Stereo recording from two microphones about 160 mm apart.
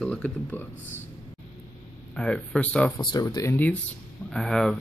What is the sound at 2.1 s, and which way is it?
Speech, 5° left (ahead or behind).